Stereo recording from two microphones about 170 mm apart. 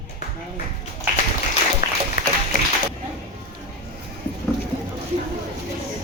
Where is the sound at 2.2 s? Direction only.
50° left (ahead or behind).